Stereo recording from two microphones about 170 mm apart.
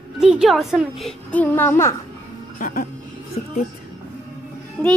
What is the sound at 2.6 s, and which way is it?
Music, 55° left (ahead or behind).